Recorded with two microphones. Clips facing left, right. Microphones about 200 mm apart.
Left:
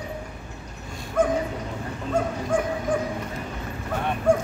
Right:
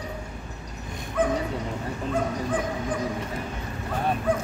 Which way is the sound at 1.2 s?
45° left (ahead or behind).